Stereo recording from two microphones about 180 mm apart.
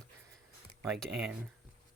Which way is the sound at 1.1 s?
5° right (ahead or behind).